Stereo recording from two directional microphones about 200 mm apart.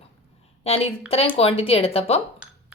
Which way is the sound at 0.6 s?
30° left (ahead or behind).